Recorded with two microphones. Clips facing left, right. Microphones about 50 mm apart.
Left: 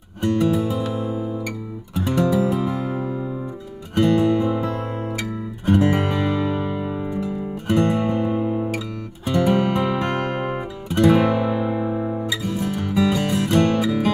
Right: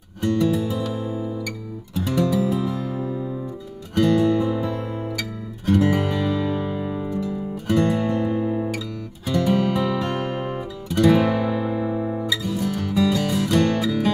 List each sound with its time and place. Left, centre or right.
0.2 s music: left
1.0 s music: left; by 4.6 s centre
5.7 s music: centre
11.0 s guitar: centre
12.2 s music: left
13.5 s music: left